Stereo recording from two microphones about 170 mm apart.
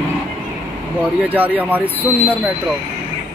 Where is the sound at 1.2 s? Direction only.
10° right (ahead or behind).